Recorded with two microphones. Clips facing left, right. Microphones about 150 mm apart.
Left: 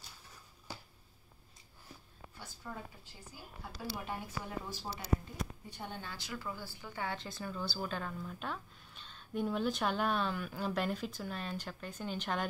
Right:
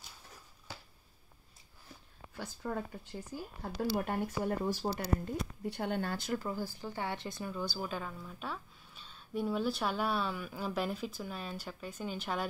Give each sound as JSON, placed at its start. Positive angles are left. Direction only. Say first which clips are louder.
{"t": 2.3, "sound": "speech", "louder": "right 9 dB", "side_deg": -60}